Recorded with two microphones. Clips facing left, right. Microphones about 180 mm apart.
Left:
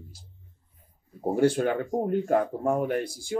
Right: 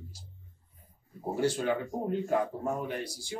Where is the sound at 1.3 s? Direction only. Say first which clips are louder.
Left 6 dB; 55° left (ahead or behind).